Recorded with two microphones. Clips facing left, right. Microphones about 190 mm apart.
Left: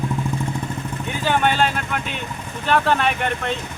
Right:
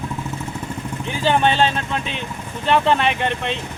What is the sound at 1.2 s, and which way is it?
Speech, 25° right (ahead or behind).